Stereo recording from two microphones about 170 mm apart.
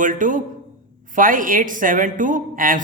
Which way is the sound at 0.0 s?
50° right (ahead or behind).